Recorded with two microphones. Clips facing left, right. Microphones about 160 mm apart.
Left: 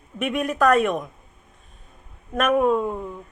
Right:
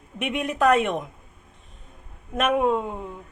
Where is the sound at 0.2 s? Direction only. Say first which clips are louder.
Left 2 dB; 20° right (ahead or behind).